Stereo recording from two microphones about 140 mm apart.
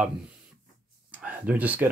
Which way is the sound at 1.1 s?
10° right (ahead or behind).